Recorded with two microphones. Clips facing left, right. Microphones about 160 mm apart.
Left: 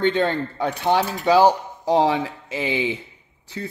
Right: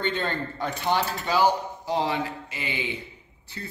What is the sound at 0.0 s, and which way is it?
Speech, 85° left.